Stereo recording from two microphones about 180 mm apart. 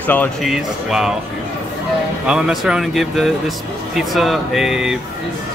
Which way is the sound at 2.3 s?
5° right (ahead or behind).